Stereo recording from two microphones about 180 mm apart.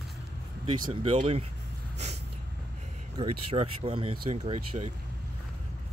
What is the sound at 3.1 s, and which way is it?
Speech, 30° right (ahead or behind).